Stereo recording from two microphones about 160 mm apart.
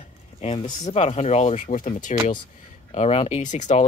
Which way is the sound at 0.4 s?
45° left (ahead or behind).